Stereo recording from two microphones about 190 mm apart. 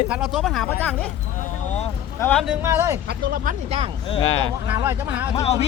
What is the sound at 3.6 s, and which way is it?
Speech, 30° right (ahead or behind).